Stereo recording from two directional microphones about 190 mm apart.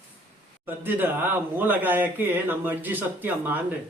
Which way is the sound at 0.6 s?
10° right (ahead or behind).